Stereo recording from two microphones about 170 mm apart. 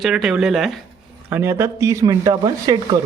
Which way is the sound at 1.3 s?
15° right (ahead or behind).